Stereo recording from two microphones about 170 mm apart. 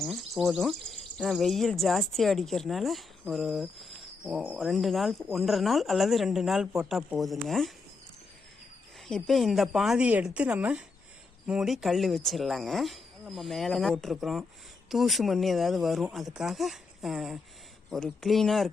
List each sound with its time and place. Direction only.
0.0 s speech: centre (ahead or behind)
9.0 s speech: centre (ahead or behind)